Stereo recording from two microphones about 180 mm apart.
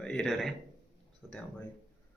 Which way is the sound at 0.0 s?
5° left (ahead or behind).